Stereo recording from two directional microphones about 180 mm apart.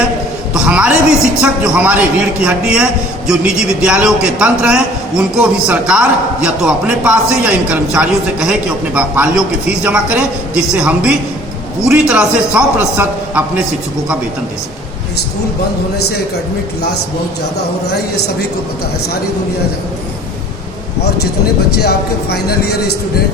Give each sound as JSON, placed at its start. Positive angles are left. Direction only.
{"t": 0.5, "sound": "a sound", "side_deg": -5}
{"t": 1.4, "sound": "a man's voice", "side_deg": -5}
{"t": 21.8, "sound": "speech", "side_deg": 60}